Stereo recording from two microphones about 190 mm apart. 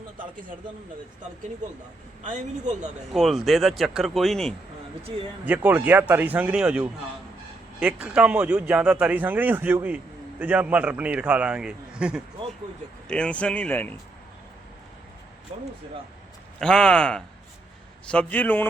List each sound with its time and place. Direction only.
2.2 s a man's voice: 40° right (ahead or behind)
3.1 s speech: centre (ahead or behind)
5.5 s speech: 10° right (ahead or behind); by 14.0 s 10° left (ahead or behind)
16.6 s speech: 5° left (ahead or behind)